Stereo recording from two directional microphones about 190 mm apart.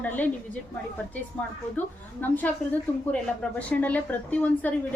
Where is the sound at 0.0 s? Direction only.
10° left (ahead or behind).